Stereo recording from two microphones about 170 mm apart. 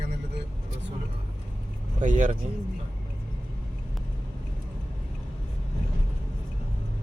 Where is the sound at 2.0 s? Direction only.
45° right (ahead or behind).